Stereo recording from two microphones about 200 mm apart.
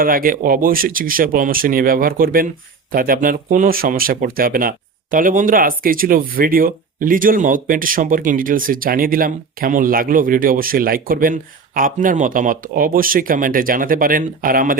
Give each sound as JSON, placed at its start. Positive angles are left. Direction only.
{"t": 0.0, "sound": "speech", "side_deg": -45}